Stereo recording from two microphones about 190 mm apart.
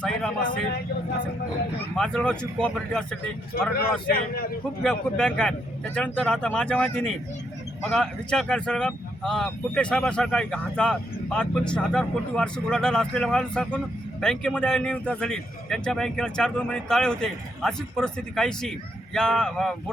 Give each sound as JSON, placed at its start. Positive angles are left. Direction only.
{"t": 2.0, "sound": "speech", "side_deg": 5}
{"t": 3.5, "sound": "a man's voice", "side_deg": 55}
{"t": 4.8, "sound": "speech", "side_deg": 5}